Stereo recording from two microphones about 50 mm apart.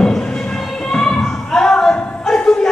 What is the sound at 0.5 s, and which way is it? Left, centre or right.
Music, centre.